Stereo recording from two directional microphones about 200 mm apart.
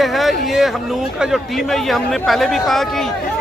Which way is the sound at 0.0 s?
Centre (ahead or behind).